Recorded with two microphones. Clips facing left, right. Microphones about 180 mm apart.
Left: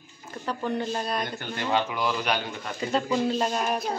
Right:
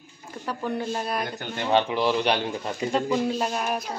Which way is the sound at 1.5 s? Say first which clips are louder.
Right 4 dB; 20° right (ahead or behind).